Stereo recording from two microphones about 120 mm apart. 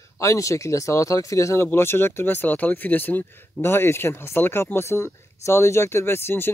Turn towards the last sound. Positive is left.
turn(degrees=20)  # may be behind; listen again after turning